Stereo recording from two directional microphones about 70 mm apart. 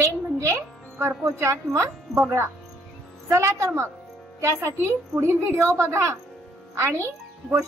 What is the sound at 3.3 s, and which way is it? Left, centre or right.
A woman's voice, right.